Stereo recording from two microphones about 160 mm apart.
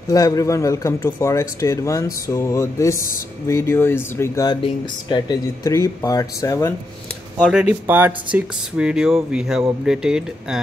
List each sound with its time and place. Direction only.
0.1 s speech: 20° left (ahead or behind)
4.5 s speech: 30° left (ahead or behind)
7.3 s speech: 5° right (ahead or behind)